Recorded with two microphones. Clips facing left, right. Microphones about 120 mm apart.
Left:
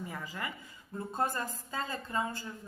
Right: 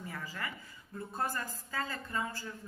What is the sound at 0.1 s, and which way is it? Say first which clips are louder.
A woman's voice: left 2 dB; 15° left (ahead or behind).